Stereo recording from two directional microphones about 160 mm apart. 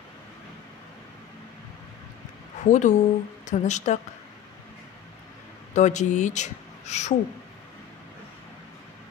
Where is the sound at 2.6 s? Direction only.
50° left (ahead or behind).